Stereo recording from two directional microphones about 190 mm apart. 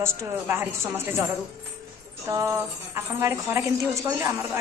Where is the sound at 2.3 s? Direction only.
15° right (ahead or behind).